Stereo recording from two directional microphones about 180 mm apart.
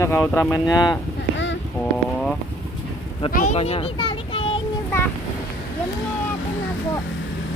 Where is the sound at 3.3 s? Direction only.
50° left (ahead or behind).